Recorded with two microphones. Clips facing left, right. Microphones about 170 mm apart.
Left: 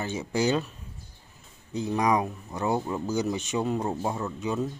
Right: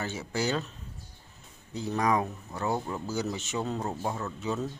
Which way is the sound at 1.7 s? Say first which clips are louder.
Left 3 dB; 20° left (ahead or behind).